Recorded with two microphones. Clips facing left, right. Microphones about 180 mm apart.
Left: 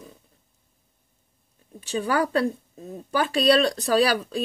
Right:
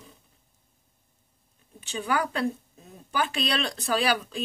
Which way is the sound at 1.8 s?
40° left (ahead or behind).